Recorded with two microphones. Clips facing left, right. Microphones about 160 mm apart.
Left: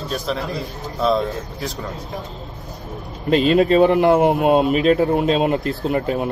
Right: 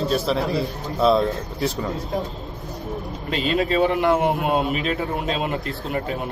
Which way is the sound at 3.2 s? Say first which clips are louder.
Left 8 dB; 50° left (ahead or behind).